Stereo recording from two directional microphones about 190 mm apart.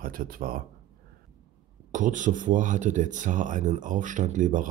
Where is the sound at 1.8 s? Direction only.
40° right (ahead or behind).